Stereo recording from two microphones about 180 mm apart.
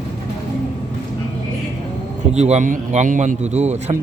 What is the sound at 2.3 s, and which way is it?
A man's voice, 40° right (ahead or behind).